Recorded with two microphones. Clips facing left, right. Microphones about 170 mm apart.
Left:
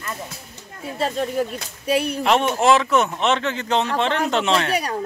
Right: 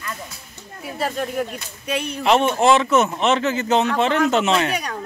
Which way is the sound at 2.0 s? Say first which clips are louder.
Right 2 dB; 5° left (ahead or behind).